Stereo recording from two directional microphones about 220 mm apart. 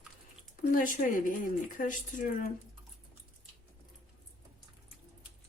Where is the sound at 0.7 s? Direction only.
35° left (ahead or behind).